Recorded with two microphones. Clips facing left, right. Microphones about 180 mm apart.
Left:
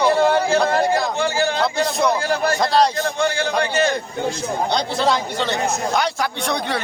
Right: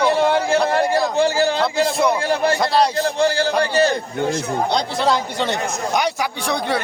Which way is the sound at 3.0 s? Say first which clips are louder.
Right 3 dB; 35° right (ahead or behind).